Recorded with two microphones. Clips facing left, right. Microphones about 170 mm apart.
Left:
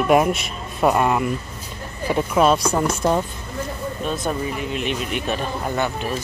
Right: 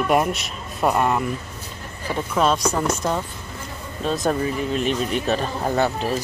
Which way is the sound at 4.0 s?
35° right (ahead or behind).